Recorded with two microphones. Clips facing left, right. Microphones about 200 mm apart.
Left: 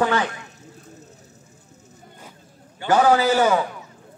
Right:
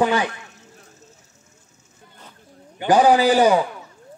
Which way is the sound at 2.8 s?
15° right (ahead or behind).